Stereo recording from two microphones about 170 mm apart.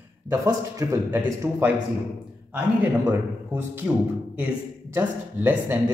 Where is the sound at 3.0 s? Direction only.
15° right (ahead or behind).